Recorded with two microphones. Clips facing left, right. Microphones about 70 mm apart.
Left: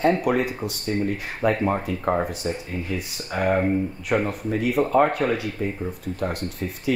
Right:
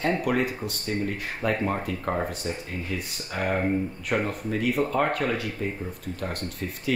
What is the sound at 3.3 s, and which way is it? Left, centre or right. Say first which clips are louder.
Speech: left 4 dB; centre.